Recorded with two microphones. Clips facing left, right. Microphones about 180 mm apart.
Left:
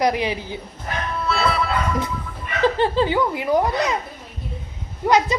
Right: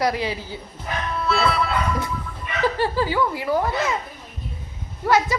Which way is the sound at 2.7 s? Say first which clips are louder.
Left 3 dB; 20° left (ahead or behind).